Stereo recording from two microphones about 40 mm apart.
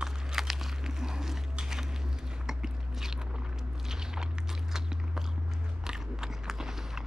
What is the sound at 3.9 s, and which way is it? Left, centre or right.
Walk, centre.